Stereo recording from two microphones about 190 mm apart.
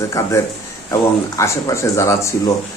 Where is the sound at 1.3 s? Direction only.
15° left (ahead or behind).